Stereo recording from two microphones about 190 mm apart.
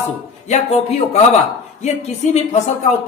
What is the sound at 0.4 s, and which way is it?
Speech, 35° left (ahead or behind).